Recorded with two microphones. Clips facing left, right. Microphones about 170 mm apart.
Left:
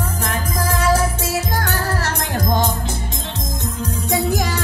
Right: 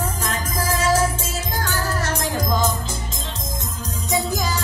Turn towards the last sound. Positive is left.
turn(degrees=60)  # may be behind; listen again after turning